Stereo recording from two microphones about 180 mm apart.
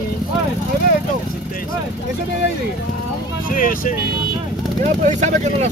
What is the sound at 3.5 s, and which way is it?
Speech, 50° left (ahead or behind).